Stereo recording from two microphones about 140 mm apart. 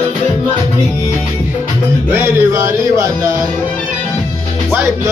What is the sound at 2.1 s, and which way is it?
Music, 20° right (ahead or behind).